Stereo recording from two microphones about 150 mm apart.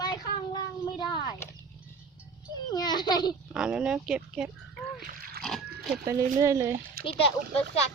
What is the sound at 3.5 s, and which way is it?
Speech, 5° right (ahead or behind).